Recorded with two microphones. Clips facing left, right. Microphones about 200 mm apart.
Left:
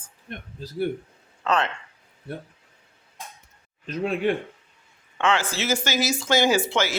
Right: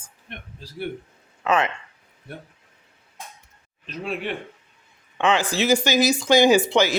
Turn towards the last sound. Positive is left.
turn(degrees=-15)  # may be behind; listen again after turning